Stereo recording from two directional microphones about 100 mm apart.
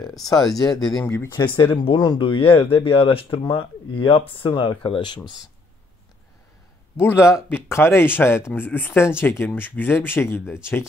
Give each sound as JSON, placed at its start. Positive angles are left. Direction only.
{"t": 0.5, "sound": "speech", "side_deg": 5}
{"t": 1.3, "sound": "speech", "side_deg": 55}
{"t": 2.0, "sound": "speech", "side_deg": 50}
{"t": 4.5, "sound": "speech", "side_deg": 50}
{"t": 7.0, "sound": "speech", "side_deg": 25}